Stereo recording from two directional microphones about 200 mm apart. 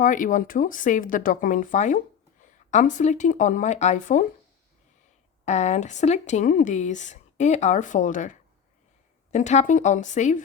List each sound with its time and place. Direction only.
0.0 s speech: 40° left (ahead or behind)
5.5 s speech: 35° left (ahead or behind)